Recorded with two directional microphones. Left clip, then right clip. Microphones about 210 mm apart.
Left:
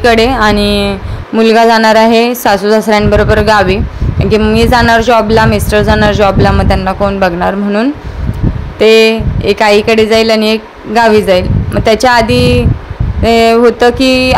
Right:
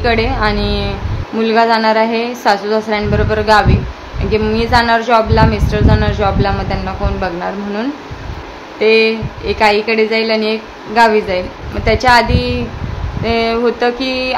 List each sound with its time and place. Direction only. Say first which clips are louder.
0.0 s a woman's voice: left 7 dB; 40° left (ahead or behind)